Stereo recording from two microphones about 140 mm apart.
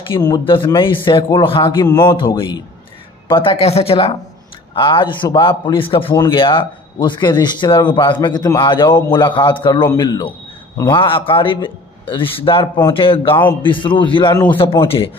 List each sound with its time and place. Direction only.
0.2 s a man's voice: 30° left (ahead or behind)